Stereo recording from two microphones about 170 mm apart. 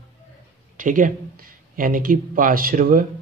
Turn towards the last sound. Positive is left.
turn(degrees=-55)  # may be behind; listen again after turning